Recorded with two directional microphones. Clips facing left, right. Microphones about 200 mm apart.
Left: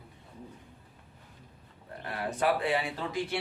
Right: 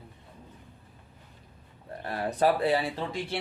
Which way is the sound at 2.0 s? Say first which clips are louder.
Right 4 dB; 35° right (ahead or behind).